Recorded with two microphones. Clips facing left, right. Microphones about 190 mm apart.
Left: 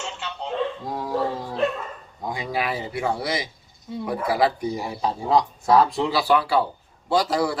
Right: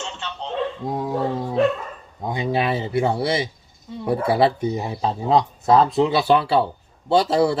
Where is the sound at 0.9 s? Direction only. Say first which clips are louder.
Right 2 dB; 25° right (ahead or behind).